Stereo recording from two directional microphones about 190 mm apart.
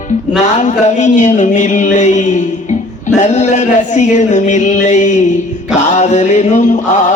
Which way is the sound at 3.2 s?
40° left (ahead or behind).